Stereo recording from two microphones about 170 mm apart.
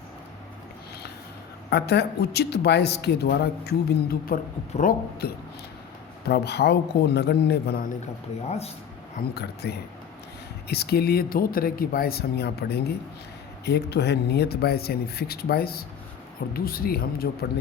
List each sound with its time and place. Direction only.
1.7 s speech: 75° left (ahead or behind)
4.7 s speech: 55° left (ahead or behind)
6.2 s speech: 75° left (ahead or behind)
8.4 s speech: 40° left (ahead or behind)
9.3 s speech: 75° left (ahead or behind)